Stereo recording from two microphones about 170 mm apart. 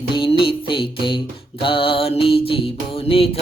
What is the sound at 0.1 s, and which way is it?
Music, 30° left (ahead or behind).